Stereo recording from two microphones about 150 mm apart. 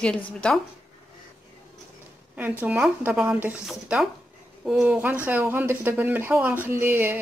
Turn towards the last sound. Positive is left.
turn(degrees=-15)  # may be behind; listen again after turning